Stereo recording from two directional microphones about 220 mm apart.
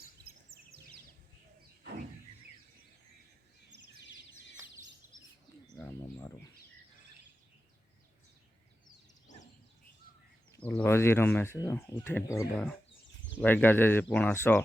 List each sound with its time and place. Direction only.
0.2 s chirp: 45° right (ahead or behind)
10.6 s speech: 5° left (ahead or behind)